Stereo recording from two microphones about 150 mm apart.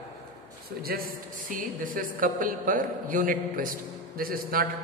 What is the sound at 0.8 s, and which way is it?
A woman's voice, 80° right.